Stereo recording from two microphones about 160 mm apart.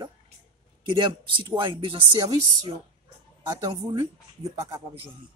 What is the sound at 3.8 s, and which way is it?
Speech, 25° right (ahead or behind).